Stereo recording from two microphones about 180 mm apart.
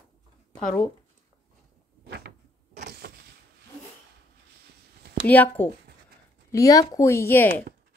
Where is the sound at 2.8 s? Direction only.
65° right (ahead or behind).